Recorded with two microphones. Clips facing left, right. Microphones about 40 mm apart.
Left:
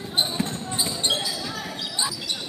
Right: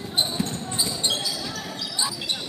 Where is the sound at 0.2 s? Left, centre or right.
Centre.